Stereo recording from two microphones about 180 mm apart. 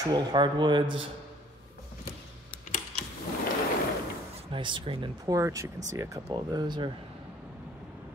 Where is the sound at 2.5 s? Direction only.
45° left (ahead or behind).